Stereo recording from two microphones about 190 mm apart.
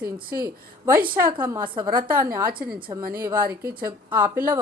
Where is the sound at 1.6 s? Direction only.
50° right (ahead or behind).